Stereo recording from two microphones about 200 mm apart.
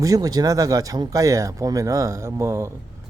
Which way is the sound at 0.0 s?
20° right (ahead or behind).